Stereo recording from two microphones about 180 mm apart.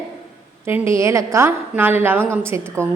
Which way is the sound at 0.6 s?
15° right (ahead or behind).